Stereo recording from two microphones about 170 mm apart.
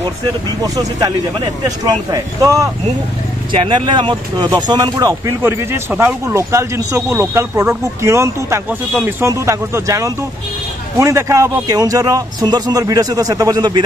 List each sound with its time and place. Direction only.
0.6 s a man's voice: 20° right (ahead or behind)
3.5 s a man's voice: 30° right (ahead or behind)